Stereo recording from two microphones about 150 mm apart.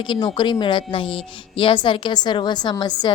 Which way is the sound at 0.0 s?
30° left (ahead or behind).